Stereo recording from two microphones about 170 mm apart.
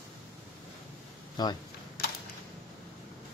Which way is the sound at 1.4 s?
25° left (ahead or behind).